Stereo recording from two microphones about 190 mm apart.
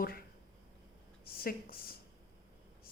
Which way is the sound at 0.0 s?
50° left (ahead or behind).